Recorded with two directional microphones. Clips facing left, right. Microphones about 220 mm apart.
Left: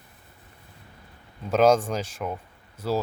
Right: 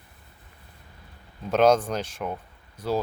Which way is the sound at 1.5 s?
10° left (ahead or behind).